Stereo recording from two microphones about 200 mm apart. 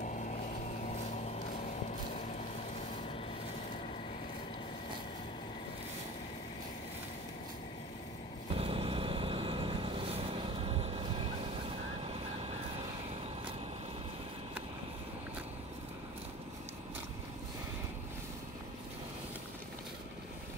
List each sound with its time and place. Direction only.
0.0 s vehicle: 40° left (ahead or behind)
8.5 s vehicle: 30° right (ahead or behind)